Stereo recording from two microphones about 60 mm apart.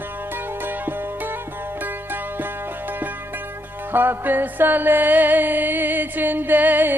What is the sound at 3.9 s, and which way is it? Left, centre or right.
Music, right.